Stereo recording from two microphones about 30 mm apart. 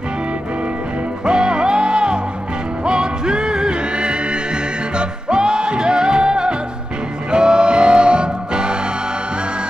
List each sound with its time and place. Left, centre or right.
1.2 s music: right